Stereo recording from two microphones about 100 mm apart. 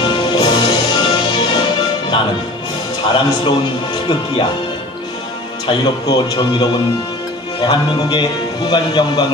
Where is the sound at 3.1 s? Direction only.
50° left (ahead or behind).